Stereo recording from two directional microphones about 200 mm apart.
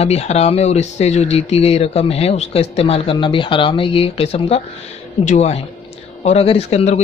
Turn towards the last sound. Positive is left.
turn(degrees=30)  # may be behind; listen again after turning